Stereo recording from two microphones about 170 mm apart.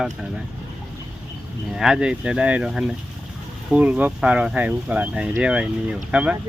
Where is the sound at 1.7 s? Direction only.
5° right (ahead or behind).